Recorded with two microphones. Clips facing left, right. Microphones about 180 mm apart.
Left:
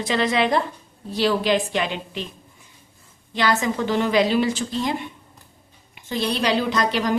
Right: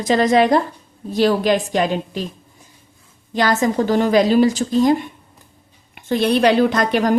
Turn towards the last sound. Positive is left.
turn(degrees=-50)  # may be behind; listen again after turning